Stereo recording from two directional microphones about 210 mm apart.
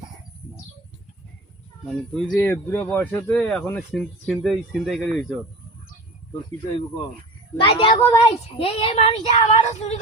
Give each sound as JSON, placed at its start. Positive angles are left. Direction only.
{"t": 1.8, "sound": "speech", "side_deg": 0}
{"t": 7.6, "sound": "speech", "side_deg": 25}